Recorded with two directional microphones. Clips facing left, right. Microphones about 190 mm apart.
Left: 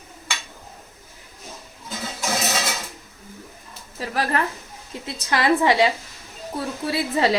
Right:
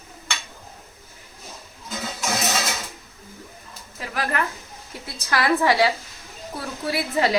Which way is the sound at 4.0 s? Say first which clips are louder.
Left 3 dB; 35° left (ahead or behind).